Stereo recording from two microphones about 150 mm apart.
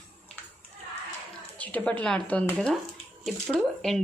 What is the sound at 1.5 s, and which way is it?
Frying, 10° left (ahead or behind).